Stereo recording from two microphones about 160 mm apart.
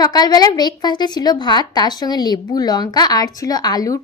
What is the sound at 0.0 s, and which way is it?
A woman's voice, 25° left (ahead or behind).